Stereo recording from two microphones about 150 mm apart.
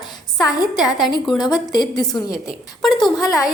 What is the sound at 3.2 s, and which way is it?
Speech, centre (ahead or behind).